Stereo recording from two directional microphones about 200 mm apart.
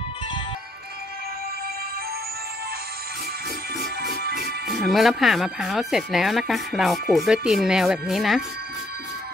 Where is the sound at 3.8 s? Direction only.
50° right (ahead or behind).